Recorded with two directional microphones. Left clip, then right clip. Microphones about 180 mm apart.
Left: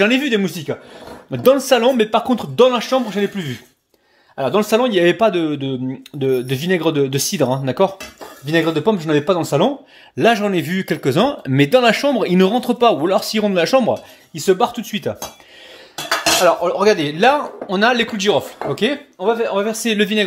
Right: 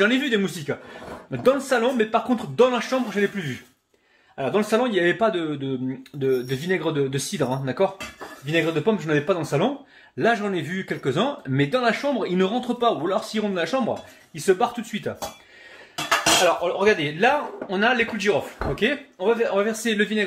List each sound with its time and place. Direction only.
0.0 s speech: 30° left (ahead or behind)
16.4 s speech: 35° left (ahead or behind)